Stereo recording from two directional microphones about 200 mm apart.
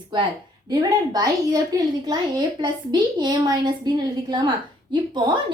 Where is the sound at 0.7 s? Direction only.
20° right (ahead or behind).